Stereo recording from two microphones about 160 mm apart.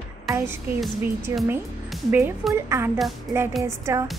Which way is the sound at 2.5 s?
15° right (ahead or behind).